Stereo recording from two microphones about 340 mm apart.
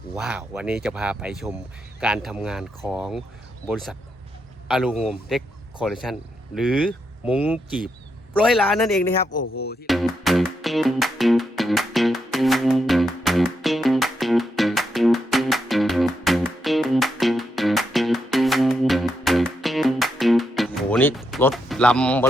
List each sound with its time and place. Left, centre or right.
0.2 s speech: centre
9.4 s speech: left
9.8 s music: centre